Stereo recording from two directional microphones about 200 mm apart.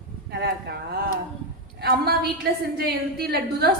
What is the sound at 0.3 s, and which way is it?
A woman's voice, 55° right (ahead or behind).